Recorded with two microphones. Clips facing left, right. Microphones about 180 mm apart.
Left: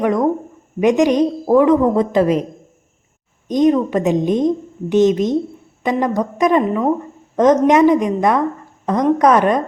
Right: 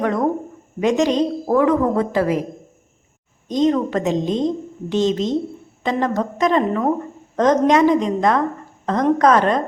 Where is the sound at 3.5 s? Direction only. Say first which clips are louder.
Left 3 dB; 15° left (ahead or behind).